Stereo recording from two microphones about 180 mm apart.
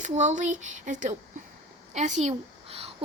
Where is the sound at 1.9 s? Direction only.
40° right (ahead or behind).